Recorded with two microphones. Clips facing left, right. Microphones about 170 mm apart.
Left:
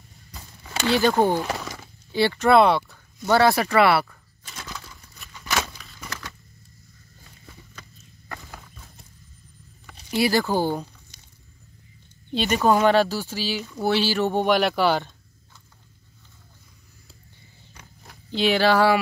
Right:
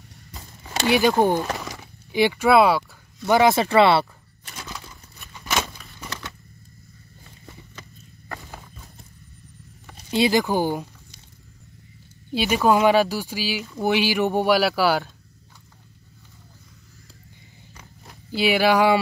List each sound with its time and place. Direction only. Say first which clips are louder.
0.8 s speech: right 1 dB; 15° right (ahead or behind)
1.4 s speech: right 1 dB; centre (ahead or behind)
1.7 s a sound: right 1 dB; 15° right (ahead or behind)
3.3 s speech: right 1 dB; 15° right (ahead or behind)
4.6 s a sound: right 1 dB; 15° right (ahead or behind)
8.3 s clip-clop: right 2 dB; 30° right (ahead or behind)
10.1 s speech: right 2 dB; 20° right (ahead or behind)
12.3 s speech: right 1 dB; 5° right (ahead or behind)
18.3 s speech: right 1 dB; 10° right (ahead or behind)